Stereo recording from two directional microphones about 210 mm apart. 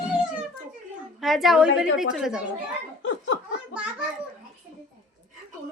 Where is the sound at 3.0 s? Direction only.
60° left (ahead or behind).